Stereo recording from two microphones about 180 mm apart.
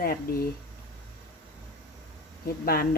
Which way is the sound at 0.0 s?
55° left (ahead or behind).